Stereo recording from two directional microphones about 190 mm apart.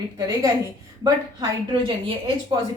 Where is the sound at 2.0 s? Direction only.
30° right (ahead or behind).